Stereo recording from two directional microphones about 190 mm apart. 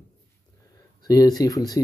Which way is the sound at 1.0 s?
20° left (ahead or behind).